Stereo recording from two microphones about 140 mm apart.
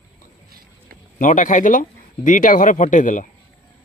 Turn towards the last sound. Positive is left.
turn(degrees=65)  # may be behind; listen again after turning